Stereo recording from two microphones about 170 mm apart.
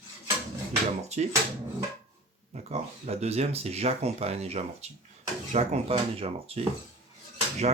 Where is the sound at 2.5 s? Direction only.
40° right (ahead or behind).